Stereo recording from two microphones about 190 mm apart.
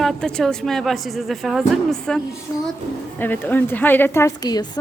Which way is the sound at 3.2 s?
10° left (ahead or behind).